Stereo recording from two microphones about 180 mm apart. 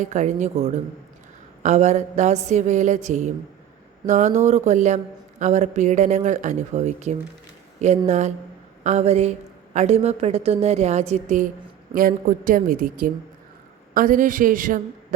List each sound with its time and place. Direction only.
0.0 s a woman's voice: 40° right (ahead or behind)